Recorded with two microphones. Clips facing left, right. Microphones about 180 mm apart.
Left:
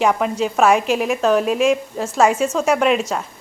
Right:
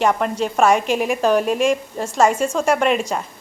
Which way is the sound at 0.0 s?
5° left (ahead or behind).